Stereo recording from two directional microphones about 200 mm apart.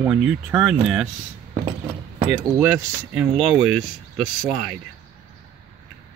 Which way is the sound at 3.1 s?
5° right (ahead or behind).